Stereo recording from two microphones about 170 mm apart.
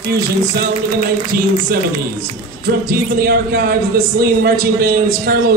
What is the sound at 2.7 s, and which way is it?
A man's voice, 65° right (ahead or behind).